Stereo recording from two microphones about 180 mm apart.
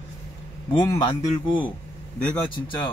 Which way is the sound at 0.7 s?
20° left (ahead or behind).